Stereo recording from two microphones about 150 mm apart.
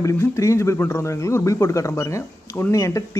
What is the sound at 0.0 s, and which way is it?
Speech, 20° left (ahead or behind).